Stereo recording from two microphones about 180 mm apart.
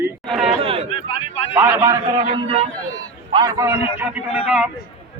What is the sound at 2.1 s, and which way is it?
Speech, 35° right (ahead or behind).